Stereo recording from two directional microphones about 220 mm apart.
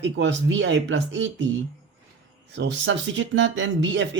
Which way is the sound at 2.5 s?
55° right (ahead or behind).